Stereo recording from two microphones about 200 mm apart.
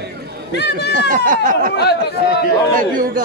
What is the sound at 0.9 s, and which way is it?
Speech, 40° right (ahead or behind).